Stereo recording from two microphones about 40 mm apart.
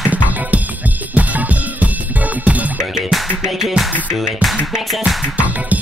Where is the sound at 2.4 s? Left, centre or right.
Right.